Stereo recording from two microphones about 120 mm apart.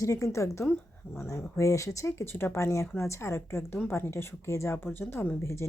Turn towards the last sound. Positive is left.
turn(degrees=20)  # may be behind; listen again after turning